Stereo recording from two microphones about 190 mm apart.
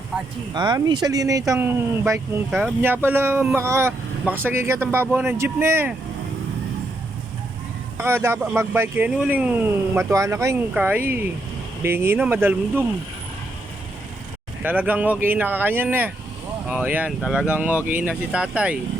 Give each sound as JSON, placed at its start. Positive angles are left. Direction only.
{"t": 0.5, "sound": "speech", "side_deg": -20}
{"t": 7.9, "sound": "speech", "side_deg": -15}
{"t": 14.6, "sound": "speech", "side_deg": -10}